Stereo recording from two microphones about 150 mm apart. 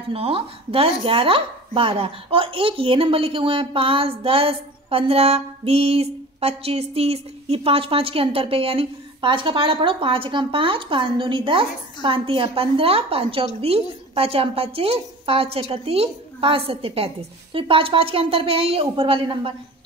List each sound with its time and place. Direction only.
0.1 s speech: 40° right (ahead or behind)